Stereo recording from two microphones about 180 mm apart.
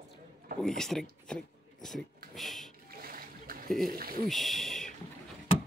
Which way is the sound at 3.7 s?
Centre (ahead or behind).